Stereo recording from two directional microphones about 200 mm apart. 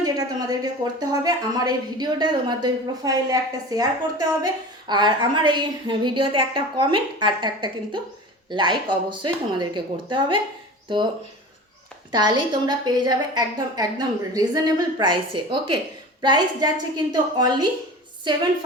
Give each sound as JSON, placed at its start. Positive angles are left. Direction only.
{"t": 0.0, "sound": "a woman's voice", "side_deg": -20}
{"t": 12.1, "sound": "a woman's voice", "side_deg": -20}